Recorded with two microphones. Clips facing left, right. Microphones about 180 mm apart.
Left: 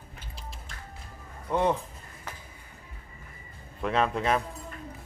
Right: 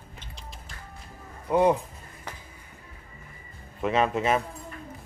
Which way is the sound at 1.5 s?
10° right (ahead or behind).